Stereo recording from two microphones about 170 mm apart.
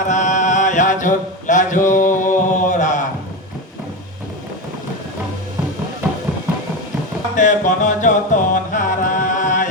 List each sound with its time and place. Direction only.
0.1 s mantra: 45° left (ahead or behind)
7.3 s music: 50° left (ahead or behind)